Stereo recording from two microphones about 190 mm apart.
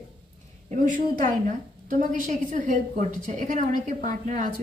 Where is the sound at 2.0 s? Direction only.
40° right (ahead or behind).